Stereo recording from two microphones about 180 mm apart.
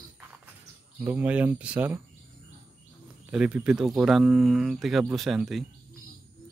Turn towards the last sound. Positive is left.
turn(degrees=0)  # may be behind; listen again after turning